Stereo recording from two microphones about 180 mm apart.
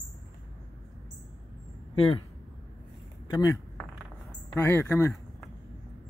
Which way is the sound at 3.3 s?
20° left (ahead or behind).